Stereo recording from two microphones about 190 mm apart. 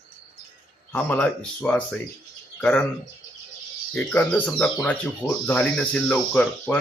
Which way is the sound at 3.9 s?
5° left (ahead or behind).